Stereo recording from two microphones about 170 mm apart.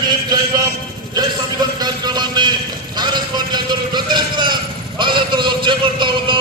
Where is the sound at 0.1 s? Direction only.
25° right (ahead or behind).